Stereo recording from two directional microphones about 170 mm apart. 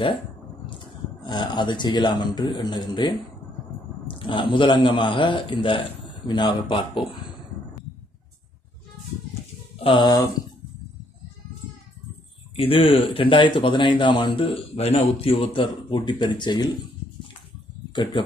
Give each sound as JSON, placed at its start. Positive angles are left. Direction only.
{"t": 0.7, "sound": "speech", "side_deg": 25}
{"t": 4.2, "sound": "a man's voice", "side_deg": 30}
{"t": 9.8, "sound": "speech", "side_deg": 30}
{"t": 12.5, "sound": "speech", "side_deg": 35}